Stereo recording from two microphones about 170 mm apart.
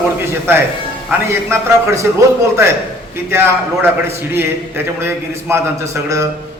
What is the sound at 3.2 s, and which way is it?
A man's voice, 15° right (ahead or behind).